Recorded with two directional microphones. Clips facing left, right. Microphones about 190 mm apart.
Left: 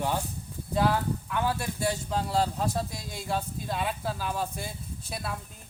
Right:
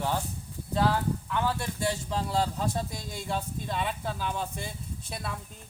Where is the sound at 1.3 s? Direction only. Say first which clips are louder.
Left 2 dB; 10° left (ahead or behind).